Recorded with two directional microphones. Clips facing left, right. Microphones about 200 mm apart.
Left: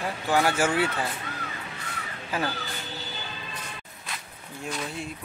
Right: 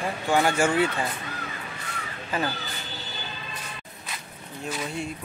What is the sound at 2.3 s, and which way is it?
Speech, 10° left (ahead or behind).